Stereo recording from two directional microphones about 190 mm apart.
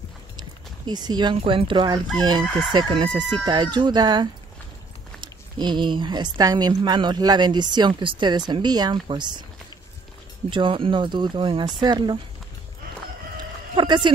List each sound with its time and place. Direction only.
0.4 s fowl: 20° right (ahead or behind)
2.7 s a woman's voice: 25° right (ahead or behind)
10.5 s a woman's voice: 25° right (ahead or behind)
13.4 s chicken: 25° right (ahead or behind)